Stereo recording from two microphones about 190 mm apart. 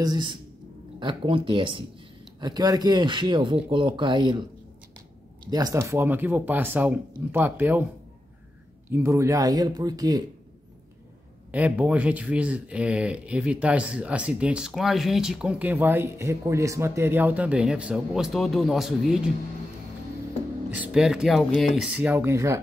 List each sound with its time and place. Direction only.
0.0 s speech: 25° right (ahead or behind)
5.5 s speech: 20° right (ahead or behind)
8.9 s speech: 15° right (ahead or behind)
11.5 s speech: 5° right (ahead or behind)
20.7 s speech: 5° right (ahead or behind)